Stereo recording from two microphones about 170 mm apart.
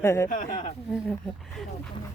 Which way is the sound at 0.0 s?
15° left (ahead or behind).